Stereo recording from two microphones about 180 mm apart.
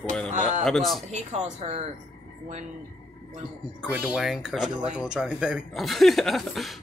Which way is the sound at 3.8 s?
5° right (ahead or behind).